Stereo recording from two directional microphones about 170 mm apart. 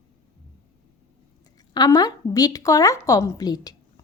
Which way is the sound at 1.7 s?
25° left (ahead or behind).